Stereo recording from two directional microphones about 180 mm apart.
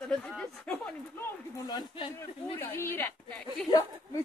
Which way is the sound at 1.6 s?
25° left (ahead or behind).